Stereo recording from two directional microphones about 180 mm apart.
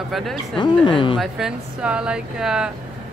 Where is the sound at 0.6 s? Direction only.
25° left (ahead or behind).